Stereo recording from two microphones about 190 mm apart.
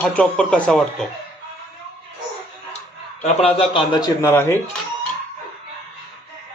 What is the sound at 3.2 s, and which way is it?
A man's voice, 30° left (ahead or behind).